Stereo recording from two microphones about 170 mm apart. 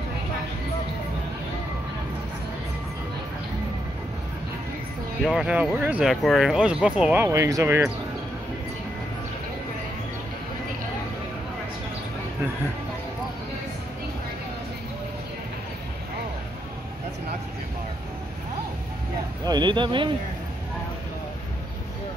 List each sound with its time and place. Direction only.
5.2 s speech: 5° right (ahead or behind)
19.4 s speech: 25° right (ahead or behind)